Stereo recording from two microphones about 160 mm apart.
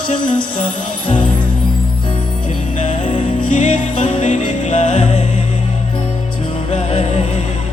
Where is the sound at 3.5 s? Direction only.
50° left (ahead or behind).